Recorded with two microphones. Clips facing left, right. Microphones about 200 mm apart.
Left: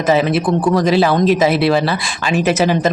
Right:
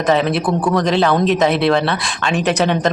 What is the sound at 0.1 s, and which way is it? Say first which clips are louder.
Speech: left 2 dB; 5° left (ahead or behind).